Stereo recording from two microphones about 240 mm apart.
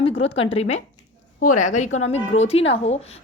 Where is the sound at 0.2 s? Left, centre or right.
Left.